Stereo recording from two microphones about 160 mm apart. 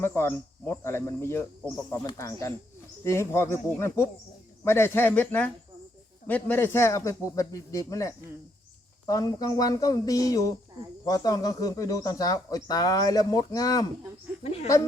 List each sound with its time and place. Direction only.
0.0 s speech: 15° left (ahead or behind)
14.4 s a woman's voice: 40° left (ahead or behind)